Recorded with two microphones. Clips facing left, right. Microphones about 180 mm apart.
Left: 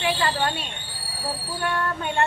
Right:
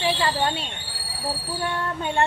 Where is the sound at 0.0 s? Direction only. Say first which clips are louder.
Right 1 dB; 25° right (ahead or behind).